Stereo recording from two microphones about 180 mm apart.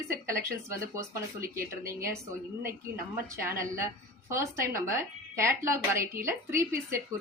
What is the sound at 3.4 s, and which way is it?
A woman's voice, 15° right (ahead or behind).